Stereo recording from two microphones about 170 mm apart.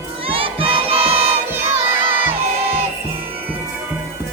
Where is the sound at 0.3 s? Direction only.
30° right (ahead or behind).